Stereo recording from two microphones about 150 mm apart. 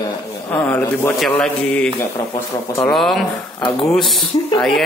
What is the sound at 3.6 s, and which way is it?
Speech, 25° left (ahead or behind).